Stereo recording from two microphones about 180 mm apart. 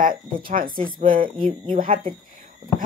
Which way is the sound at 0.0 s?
50° right (ahead or behind).